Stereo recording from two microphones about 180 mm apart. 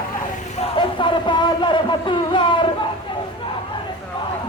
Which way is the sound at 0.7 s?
30° left (ahead or behind).